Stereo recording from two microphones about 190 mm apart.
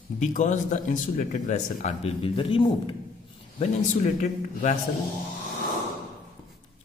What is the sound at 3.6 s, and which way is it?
A woman's voice, 40° left (ahead or behind).